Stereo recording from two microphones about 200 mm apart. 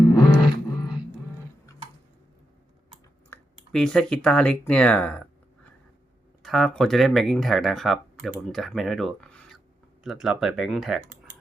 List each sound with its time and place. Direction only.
0.1 s music: 20° left (ahead or behind)
3.2 s speech: 5° left (ahead or behind)
6.4 s speech: centre (ahead or behind)